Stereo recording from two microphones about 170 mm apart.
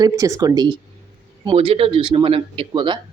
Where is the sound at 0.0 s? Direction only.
20° right (ahead or behind).